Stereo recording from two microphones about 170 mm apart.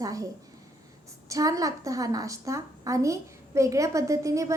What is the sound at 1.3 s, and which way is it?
A woman's voice, 20° right (ahead or behind).